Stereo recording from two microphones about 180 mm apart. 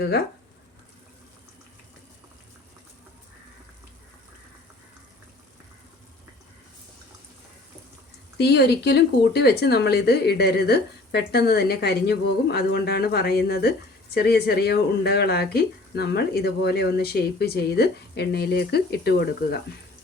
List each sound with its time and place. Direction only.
8.4 s speech: 65° left (ahead or behind)